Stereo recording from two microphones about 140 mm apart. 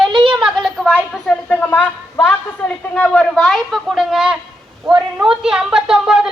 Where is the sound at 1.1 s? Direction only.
10° left (ahead or behind).